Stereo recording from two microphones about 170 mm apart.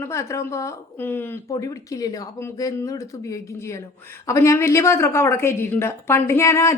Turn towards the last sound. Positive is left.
turn(degrees=15)  # may be behind; listen again after turning